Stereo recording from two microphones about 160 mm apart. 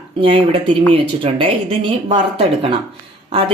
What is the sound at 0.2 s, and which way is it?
Speech, 35° right (ahead or behind).